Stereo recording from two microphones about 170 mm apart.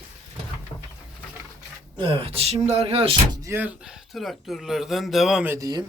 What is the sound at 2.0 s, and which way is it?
Speech, 35° right (ahead or behind).